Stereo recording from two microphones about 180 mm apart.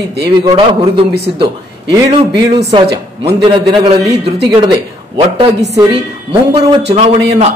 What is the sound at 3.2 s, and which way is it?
A man's voice, 25° right (ahead or behind).